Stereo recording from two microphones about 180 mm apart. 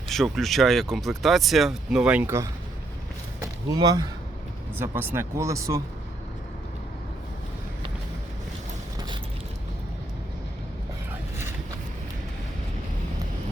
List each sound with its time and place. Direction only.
0.1 s speech: centre (ahead or behind)
3.7 s speech: 20° right (ahead or behind)
4.8 s speech: 10° right (ahead or behind)